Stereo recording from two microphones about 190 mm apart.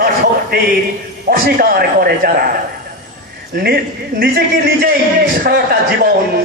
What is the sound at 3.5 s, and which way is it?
A man's voice, 55° right (ahead or behind).